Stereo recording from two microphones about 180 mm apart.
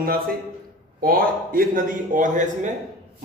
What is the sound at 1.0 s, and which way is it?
A man's voice, 55° right (ahead or behind).